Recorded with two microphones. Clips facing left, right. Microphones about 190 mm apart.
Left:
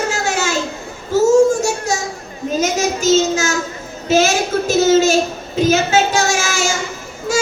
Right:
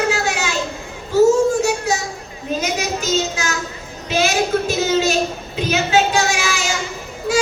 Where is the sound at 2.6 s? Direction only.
45° left (ahead or behind).